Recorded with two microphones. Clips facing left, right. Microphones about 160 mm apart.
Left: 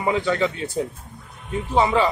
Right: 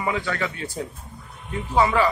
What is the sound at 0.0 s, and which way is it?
Speech, 25° left (ahead or behind).